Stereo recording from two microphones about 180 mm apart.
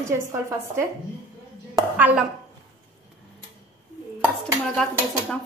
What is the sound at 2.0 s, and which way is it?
Speech, 10° right (ahead or behind).